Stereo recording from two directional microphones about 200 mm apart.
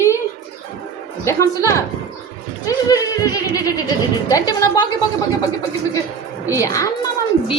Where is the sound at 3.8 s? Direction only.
20° left (ahead or behind).